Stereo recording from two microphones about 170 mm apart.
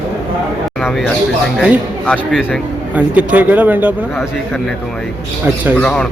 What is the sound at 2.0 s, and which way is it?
Speech, 5° left (ahead or behind).